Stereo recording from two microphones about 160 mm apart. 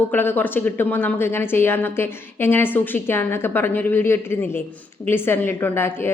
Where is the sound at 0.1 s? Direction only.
10° left (ahead or behind).